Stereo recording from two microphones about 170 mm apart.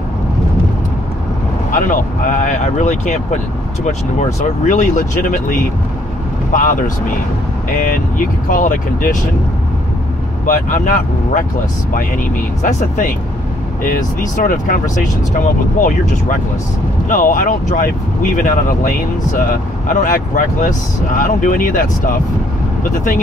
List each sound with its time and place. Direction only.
1.7 s speech: 50° left (ahead or behind)
6.5 s speech: 50° left (ahead or behind)
8.5 s speech: 55° left (ahead or behind)
10.4 s speech: 50° left (ahead or behind)
12.6 s speech: 45° left (ahead or behind)
17.1 s speech: 50° left (ahead or behind)